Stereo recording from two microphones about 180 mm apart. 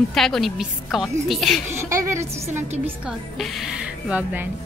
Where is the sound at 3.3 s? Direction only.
Centre (ahead or behind).